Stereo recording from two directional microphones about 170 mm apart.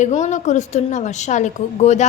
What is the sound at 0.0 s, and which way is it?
A woman's voice, 45° left (ahead or behind).